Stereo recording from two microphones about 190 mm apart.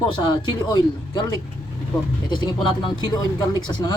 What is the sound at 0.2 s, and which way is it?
Speech, 20° left (ahead or behind).